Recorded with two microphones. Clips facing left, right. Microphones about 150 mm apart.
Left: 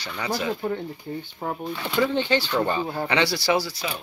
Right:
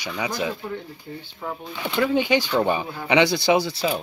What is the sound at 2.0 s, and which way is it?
Speech, 10° right (ahead or behind).